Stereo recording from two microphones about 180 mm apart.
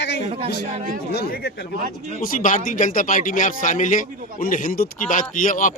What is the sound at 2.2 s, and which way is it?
Speech, 50° left (ahead or behind).